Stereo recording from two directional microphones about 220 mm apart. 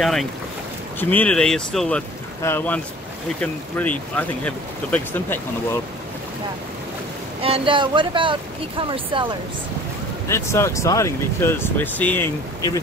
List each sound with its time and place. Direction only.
0.0 s speech: centre (ahead or behind)
7.4 s speech: 25° right (ahead or behind)
10.2 s speech: 10° left (ahead or behind)